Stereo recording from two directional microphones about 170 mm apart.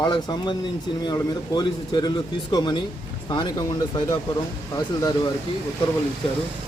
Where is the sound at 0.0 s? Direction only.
25° left (ahead or behind).